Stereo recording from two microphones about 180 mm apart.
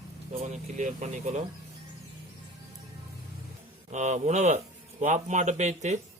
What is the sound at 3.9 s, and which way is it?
Speech, 40° right (ahead or behind).